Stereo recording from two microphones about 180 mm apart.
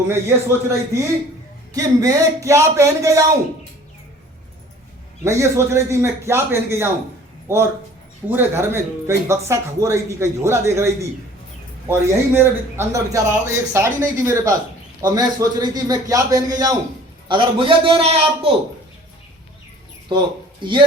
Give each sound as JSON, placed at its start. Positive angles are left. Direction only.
{"t": 0.1, "sound": "a man's voice", "side_deg": -15}
{"t": 5.2, "sound": "a man's voice", "side_deg": -15}
{"t": 20.1, "sound": "a man's voice", "side_deg": -25}